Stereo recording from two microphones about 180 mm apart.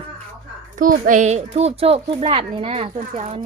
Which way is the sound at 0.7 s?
50° right (ahead or behind).